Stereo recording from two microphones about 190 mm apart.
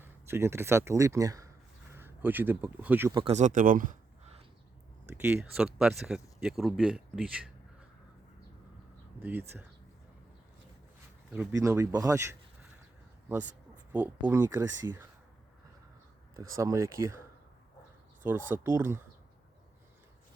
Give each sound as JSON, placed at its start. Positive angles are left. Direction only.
{"t": 0.0, "sound": "speech", "side_deg": -15}
{"t": 3.2, "sound": "speech", "side_deg": -35}
{"t": 5.1, "sound": "speech", "side_deg": -10}
{"t": 9.2, "sound": "speech", "side_deg": -10}
{"t": 11.3, "sound": "speech", "side_deg": -15}
{"t": 16.3, "sound": "speech", "side_deg": -15}